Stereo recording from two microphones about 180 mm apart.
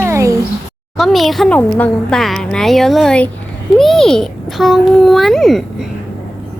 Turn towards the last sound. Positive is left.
turn(degrees=0)  # may be behind; listen again after turning